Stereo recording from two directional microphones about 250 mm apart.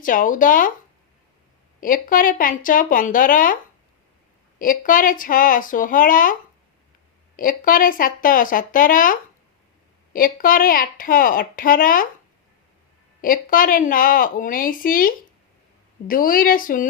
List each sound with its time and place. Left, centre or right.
0.0 s a woman's voice: left
1.8 s a woman's voice: left
4.6 s a woman's voice: left
7.3 s a woman's voice: left
13.2 s a woman's voice: left